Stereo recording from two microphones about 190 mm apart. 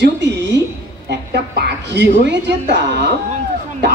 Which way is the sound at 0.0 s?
65° right (ahead or behind).